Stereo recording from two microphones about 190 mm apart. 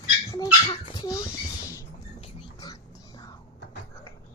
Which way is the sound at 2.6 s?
20° left (ahead or behind).